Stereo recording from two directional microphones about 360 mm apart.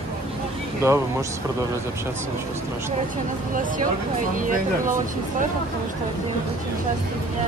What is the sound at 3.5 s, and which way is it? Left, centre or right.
Speech, right.